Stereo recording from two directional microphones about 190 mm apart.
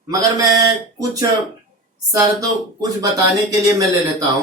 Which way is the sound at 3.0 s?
20° right (ahead or behind).